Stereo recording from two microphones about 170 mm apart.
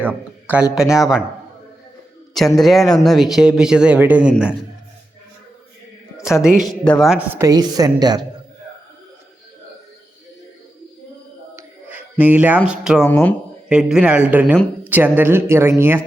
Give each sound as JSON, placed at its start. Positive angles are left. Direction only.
{"t": 0.0, "sound": "speech", "side_deg": -10}
{"t": 2.6, "sound": "speech", "side_deg": 0}
{"t": 6.1, "sound": "speech", "side_deg": -5}
{"t": 7.3, "sound": "a woman's voice", "side_deg": -20}
{"t": 11.5, "sound": "a sound", "side_deg": -10}
{"t": 12.8, "sound": "speech", "side_deg": -5}
{"t": 13.1, "sound": "speech", "side_deg": 10}
{"t": 13.7, "sound": "speech", "side_deg": -5}